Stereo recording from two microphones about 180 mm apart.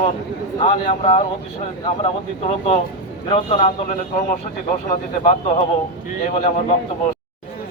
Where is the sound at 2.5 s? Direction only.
35° left (ahead or behind).